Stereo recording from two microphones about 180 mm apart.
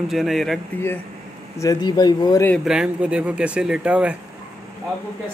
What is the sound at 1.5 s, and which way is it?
Speech, 20° left (ahead or behind).